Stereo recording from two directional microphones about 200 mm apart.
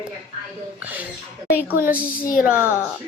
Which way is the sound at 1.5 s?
10° right (ahead or behind).